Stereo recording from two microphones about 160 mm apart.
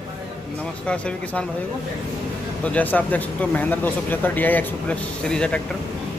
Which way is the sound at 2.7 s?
10° left (ahead or behind).